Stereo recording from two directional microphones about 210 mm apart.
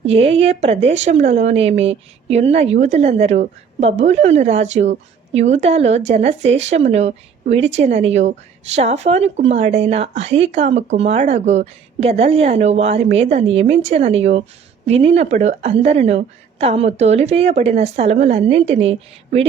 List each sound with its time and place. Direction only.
0.0 s a woman's voice: 30° right (ahead or behind)